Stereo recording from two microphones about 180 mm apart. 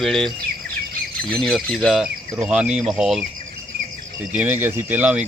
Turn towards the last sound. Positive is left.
turn(degrees=-10)  # may be behind; listen again after turning